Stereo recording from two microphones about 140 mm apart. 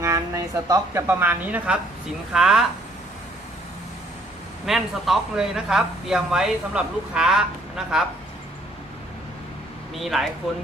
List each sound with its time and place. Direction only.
0.0 s speech: 25° right (ahead or behind); by 2.6 s 5° right (ahead or behind)
4.6 s speech: centre (ahead or behind)
9.9 s speech: centre (ahead or behind)